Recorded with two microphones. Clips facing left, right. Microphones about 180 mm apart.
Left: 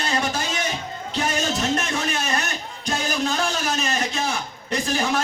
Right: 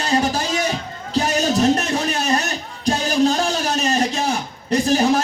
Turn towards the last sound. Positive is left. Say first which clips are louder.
# right 7 dB
turn(degrees=-40)  # may be behind; listen again after turning